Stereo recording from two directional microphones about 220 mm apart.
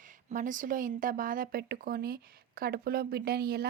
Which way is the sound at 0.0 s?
35° right (ahead or behind).